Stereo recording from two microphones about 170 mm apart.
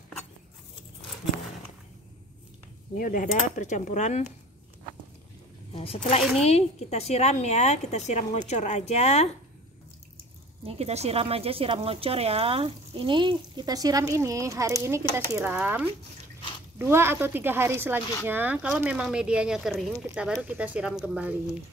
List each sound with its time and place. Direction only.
3.0 s speech: 50° left (ahead or behind)
5.7 s a woman's voice: 30° left (ahead or behind)
10.6 s speech: 35° right (ahead or behind); by 21.4 s 5° right (ahead or behind)